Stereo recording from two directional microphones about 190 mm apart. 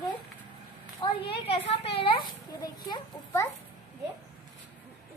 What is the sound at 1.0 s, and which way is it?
A child's voice, 25° left (ahead or behind).